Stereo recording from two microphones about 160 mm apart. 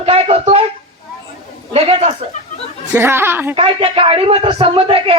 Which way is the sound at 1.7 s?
40° right (ahead or behind).